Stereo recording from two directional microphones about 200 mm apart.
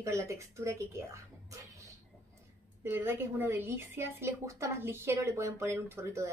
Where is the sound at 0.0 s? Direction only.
15° right (ahead or behind).